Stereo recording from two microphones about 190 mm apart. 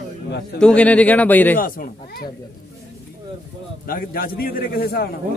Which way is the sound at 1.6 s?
50° left (ahead or behind).